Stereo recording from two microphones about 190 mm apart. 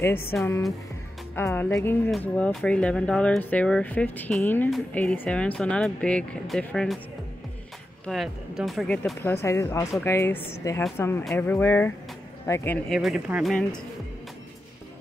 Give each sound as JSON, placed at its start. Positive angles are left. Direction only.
{"t": 0.0, "sound": "speech", "side_deg": 10}
{"t": 8.1, "sound": "speech", "side_deg": 0}
{"t": 9.3, "sound": "speech", "side_deg": 15}